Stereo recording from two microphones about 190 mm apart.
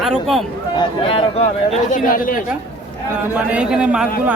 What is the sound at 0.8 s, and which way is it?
Speech, 25° left (ahead or behind).